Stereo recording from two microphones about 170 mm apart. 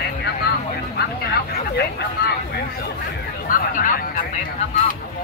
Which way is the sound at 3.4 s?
55° left (ahead or behind).